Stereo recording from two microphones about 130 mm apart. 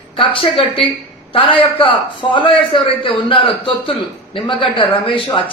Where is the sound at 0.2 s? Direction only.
45° left (ahead or behind).